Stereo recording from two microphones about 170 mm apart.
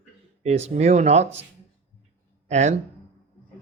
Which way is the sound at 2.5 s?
40° right (ahead or behind).